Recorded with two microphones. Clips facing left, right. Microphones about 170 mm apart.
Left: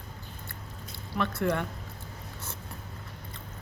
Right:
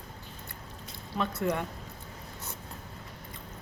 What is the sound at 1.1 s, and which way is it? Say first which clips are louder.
Speech: left 2 dB; 20° right (ahead or behind).